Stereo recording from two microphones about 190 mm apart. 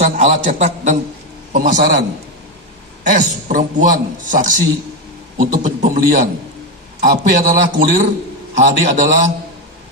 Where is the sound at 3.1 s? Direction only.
40° right (ahead or behind).